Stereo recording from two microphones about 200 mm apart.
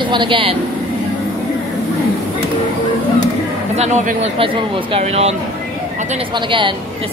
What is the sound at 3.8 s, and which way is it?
Speech, 35° right (ahead or behind).